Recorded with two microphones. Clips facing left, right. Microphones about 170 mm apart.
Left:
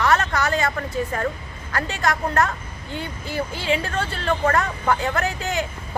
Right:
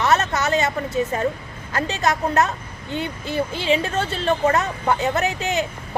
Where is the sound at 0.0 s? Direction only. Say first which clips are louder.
Right 1 dB; 25° right (ahead or behind).